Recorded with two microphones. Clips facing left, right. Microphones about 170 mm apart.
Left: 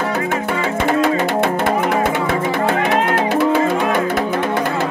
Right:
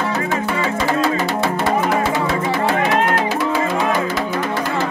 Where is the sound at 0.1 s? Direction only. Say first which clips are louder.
Left 1 dB; 55° left (ahead or behind).